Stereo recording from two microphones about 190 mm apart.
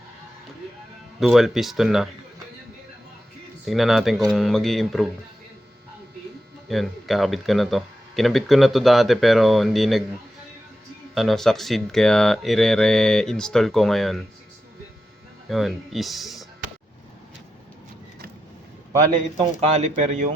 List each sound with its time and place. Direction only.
1.2 s speech: centre (ahead or behind)
3.7 s speech: centre (ahead or behind)
6.7 s speech: centre (ahead or behind)
11.1 s speech: centre (ahead or behind)
15.4 s speech: centre (ahead or behind)
19.1 s speech: 30° right (ahead or behind)